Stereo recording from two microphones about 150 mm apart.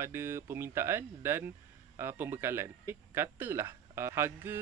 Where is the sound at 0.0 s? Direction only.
15° right (ahead or behind).